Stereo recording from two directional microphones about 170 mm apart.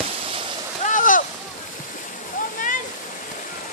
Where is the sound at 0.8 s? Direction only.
50° left (ahead or behind).